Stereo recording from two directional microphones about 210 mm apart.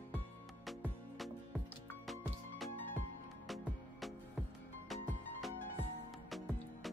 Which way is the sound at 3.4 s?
Centre (ahead or behind).